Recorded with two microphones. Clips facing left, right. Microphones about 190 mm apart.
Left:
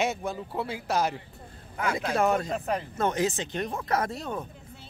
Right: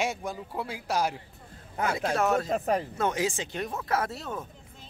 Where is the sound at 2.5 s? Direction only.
40° right (ahead or behind).